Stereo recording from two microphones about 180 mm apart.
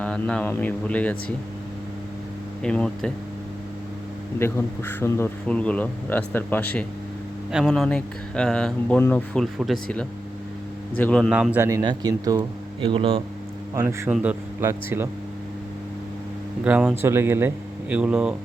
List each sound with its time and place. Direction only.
0.0 s speech: 5° left (ahead or behind)
2.6 s speech: 5° left (ahead or behind)
4.4 s speech: 15° left (ahead or behind); by 13.2 s 30° right (ahead or behind)
13.7 s speech: 10° right (ahead or behind)
16.6 s speech: 5° right (ahead or behind)